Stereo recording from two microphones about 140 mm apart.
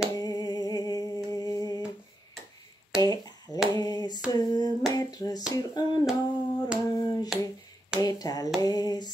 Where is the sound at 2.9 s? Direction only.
25° left (ahead or behind).